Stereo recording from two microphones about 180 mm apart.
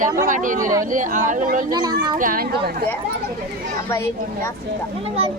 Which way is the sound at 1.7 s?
20° right (ahead or behind).